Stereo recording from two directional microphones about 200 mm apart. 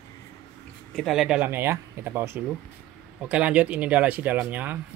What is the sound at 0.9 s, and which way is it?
Speech, centre (ahead or behind).